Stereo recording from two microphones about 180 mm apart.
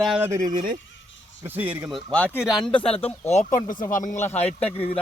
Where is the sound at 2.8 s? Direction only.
30° left (ahead or behind).